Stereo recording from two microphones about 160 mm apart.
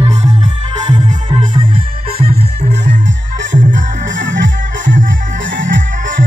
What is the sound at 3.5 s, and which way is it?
Music, 55° right (ahead or behind).